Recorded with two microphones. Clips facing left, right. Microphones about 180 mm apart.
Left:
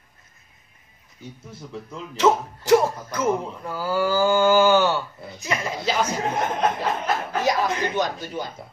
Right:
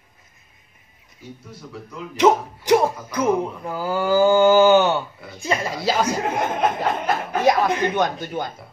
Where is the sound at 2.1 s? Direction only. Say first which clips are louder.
Right 3 dB; 15° right (ahead or behind).